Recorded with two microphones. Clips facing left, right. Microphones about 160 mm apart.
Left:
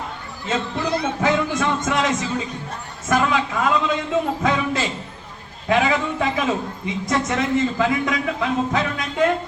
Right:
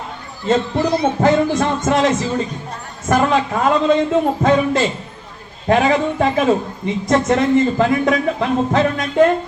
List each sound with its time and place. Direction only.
0.4 s speech: 50° right (ahead or behind)